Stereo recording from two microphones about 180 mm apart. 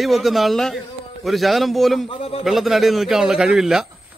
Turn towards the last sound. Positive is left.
turn(degrees=0)  # may be behind; listen again after turning